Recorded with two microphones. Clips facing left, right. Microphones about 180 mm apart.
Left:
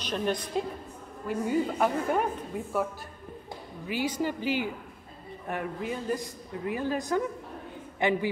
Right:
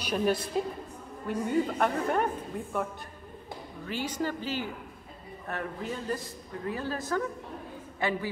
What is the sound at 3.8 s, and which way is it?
A man's voice, 10° left (ahead or behind).